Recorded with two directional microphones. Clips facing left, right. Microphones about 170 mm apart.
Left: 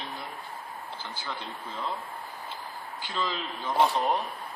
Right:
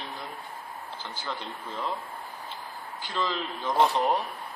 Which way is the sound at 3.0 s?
10° left (ahead or behind).